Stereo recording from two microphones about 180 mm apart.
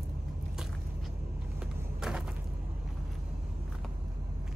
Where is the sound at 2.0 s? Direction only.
5° right (ahead or behind).